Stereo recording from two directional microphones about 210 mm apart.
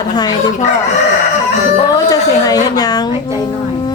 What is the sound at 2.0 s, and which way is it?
Speech, 15° left (ahead or behind).